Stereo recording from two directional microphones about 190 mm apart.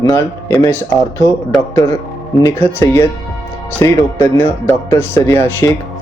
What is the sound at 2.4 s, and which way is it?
Speech, 10° left (ahead or behind).